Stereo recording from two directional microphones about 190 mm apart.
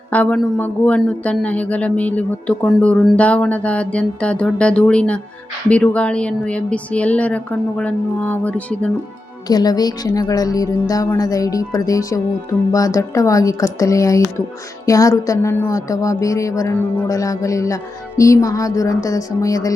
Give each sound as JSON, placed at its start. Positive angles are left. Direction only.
{"t": 0.1, "sound": "speech", "side_deg": 5}
{"t": 9.5, "sound": "speech", "side_deg": 20}